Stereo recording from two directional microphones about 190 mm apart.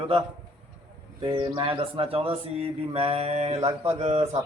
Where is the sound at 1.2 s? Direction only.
25° right (ahead or behind).